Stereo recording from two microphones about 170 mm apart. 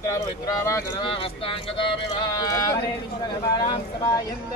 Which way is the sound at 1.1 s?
30° left (ahead or behind).